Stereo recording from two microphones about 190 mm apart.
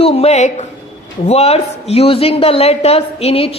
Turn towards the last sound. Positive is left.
turn(degrees=30)  # may be behind; listen again after turning